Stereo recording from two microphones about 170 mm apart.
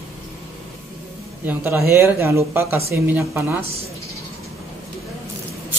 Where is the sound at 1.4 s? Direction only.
15° right (ahead or behind).